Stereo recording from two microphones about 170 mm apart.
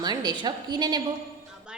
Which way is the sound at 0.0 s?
25° right (ahead or behind).